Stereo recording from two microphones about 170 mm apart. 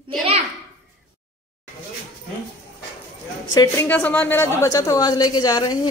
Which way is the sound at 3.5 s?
20° left (ahead or behind).